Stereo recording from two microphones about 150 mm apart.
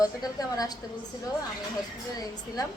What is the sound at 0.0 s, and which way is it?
Speech, 25° left (ahead or behind).